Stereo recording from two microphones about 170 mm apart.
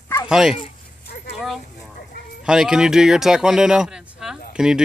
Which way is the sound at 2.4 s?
5° right (ahead or behind).